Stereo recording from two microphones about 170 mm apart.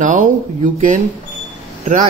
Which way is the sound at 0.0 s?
50° right (ahead or behind).